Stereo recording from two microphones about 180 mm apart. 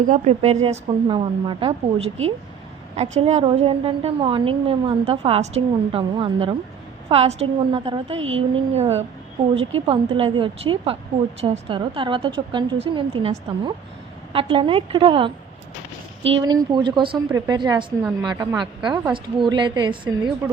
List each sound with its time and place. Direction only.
0.1 s a woman's voice: 35° right (ahead or behind)
3.2 s a woman's voice: 35° right (ahead or behind)
8.1 s speech: 90° right
8.4 s a woman's voice: 35° right (ahead or behind)